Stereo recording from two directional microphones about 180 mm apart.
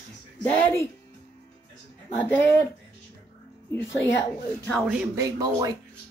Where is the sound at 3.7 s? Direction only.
15° left (ahead or behind).